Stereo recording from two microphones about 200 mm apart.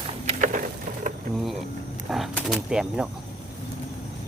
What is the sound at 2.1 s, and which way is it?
Speech, centre (ahead or behind).